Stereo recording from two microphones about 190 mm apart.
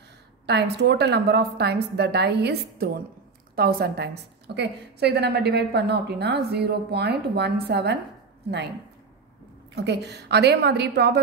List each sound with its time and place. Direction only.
0.5 s a woman's voice: 60° right (ahead or behind)
9.8 s a woman's voice: 65° right (ahead or behind)